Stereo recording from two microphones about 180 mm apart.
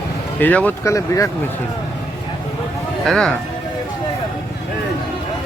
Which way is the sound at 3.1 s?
Centre (ahead or behind).